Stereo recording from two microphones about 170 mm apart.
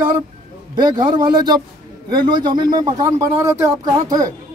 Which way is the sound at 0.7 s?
25° right (ahead or behind).